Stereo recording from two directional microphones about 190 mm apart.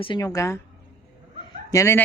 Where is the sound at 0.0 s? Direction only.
25° left (ahead or behind).